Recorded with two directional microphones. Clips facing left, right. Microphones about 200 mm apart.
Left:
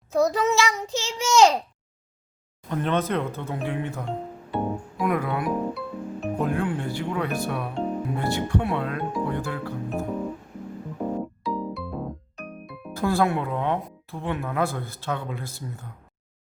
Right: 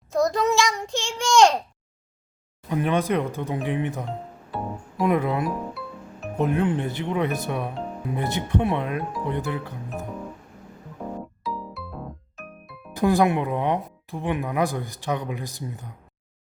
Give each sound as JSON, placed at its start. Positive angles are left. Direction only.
{"t": 0.1, "sound": "a child's voice", "side_deg": 0}
{"t": 2.6, "sound": "speech", "side_deg": -10}
{"t": 4.5, "sound": "music", "side_deg": 0}
{"t": 4.9, "sound": "speech", "side_deg": -25}
{"t": 5.5, "sound": "music", "side_deg": 0}
{"t": 6.4, "sound": "speech", "side_deg": -20}
{"t": 7.7, "sound": "music", "side_deg": 0}
{"t": 8.1, "sound": "speech", "side_deg": -20}
{"t": 11.0, "sound": "music", "side_deg": 10}
{"t": 11.4, "sound": "music", "side_deg": 0}
{"t": 12.9, "sound": "speech", "side_deg": -15}